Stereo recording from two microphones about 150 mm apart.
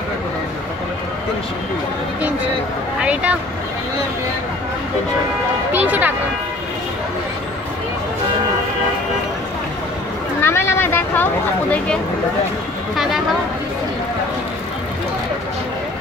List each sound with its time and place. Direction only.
3.0 s speech: 10° right (ahead or behind)
5.7 s speech: 10° right (ahead or behind)
10.4 s vehicle: 15° left (ahead or behind)
12.9 s a woman's voice: centre (ahead or behind)